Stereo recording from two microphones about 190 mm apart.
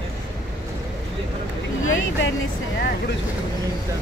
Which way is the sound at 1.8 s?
90° left.